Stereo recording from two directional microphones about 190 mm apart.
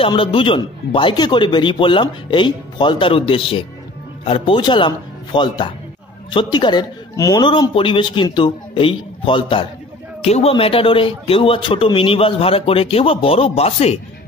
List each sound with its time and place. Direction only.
0.0 s a man's voice: 30° left (ahead or behind)